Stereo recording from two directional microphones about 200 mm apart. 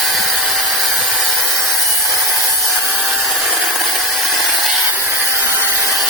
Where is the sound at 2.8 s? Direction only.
5° right (ahead or behind).